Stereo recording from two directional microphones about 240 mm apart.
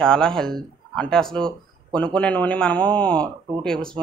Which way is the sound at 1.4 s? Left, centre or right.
Centre.